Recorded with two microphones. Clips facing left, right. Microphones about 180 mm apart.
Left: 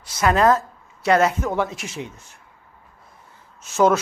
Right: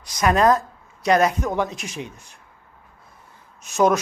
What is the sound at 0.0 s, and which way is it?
Speech, 15° right (ahead or behind).